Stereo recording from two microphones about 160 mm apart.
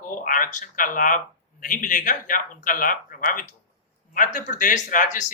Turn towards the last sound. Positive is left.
turn(degrees=50)  # may be behind; listen again after turning